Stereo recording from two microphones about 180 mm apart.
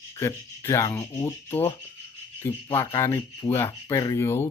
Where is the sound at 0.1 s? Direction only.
15° left (ahead or behind).